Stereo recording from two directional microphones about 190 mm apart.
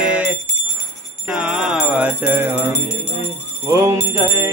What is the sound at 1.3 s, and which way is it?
Music, 5° right (ahead or behind).